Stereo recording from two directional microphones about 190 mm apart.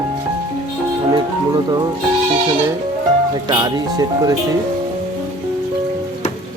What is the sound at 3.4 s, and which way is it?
Speech, 20° right (ahead or behind).